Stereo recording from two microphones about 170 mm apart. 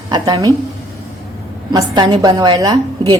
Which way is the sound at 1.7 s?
25° right (ahead or behind).